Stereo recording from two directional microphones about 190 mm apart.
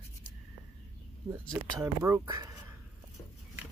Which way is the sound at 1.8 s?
15° right (ahead or behind).